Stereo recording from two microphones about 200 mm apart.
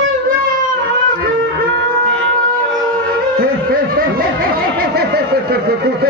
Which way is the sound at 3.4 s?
45° right (ahead or behind).